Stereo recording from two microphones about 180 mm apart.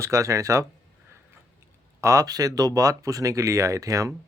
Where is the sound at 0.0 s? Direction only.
15° right (ahead or behind).